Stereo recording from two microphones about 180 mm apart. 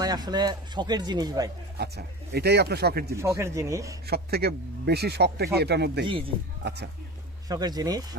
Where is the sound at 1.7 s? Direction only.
65° right (ahead or behind).